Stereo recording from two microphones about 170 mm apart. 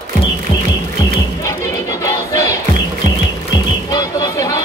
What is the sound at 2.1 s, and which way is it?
Battle cry, 20° left (ahead or behind).